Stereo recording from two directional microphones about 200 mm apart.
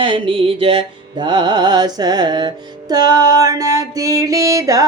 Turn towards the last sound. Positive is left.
turn(degrees=-15)  # may be behind; listen again after turning